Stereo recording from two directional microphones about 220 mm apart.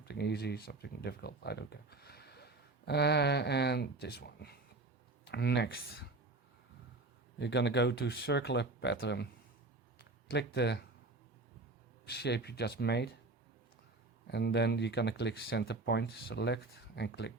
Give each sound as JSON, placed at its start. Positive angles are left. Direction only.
{"t": 0.0, "sound": "speech", "side_deg": 50}
{"t": 7.3, "sound": "speech", "side_deg": 50}
{"t": 12.0, "sound": "speech", "side_deg": 50}
{"t": 14.3, "sound": "speech", "side_deg": 50}